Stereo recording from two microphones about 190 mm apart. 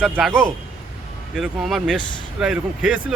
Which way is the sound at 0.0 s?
Centre (ahead or behind).